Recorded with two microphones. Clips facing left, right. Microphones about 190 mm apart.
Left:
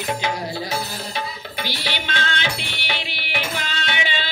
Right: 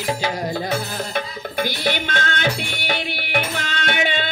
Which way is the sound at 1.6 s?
50° right (ahead or behind).